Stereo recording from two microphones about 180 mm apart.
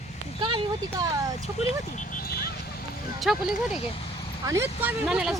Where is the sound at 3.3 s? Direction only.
5° right (ahead or behind).